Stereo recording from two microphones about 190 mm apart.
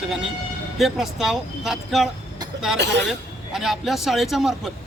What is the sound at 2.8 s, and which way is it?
Speech, 65° right (ahead or behind).